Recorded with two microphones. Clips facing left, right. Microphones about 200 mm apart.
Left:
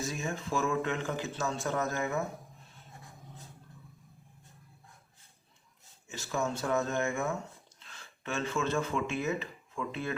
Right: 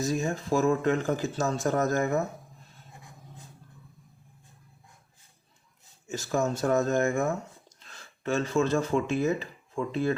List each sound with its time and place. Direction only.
0.0 s speech: 40° right (ahead or behind)
6.1 s speech: 40° right (ahead or behind)